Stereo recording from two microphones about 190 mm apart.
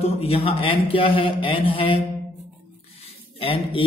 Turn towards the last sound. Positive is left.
turn(degrees=30)  # may be behind; listen again after turning